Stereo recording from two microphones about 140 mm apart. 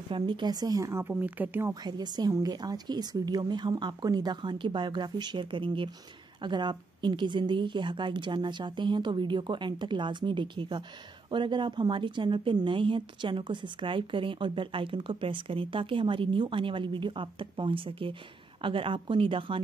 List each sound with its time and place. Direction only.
0.1 s speech: 35° right (ahead or behind); by 1.7 s 15° right (ahead or behind)
1.7 s a woman's voice: 30° right (ahead or behind)